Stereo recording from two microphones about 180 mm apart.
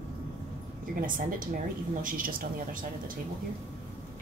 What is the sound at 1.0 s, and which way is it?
Speech, 50° right (ahead or behind).